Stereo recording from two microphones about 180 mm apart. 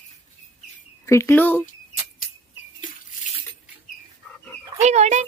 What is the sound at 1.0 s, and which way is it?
Speech, 15° left (ahead or behind).